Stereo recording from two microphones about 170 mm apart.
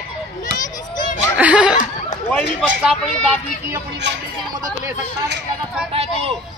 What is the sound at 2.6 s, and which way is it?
Speech, 5° right (ahead or behind).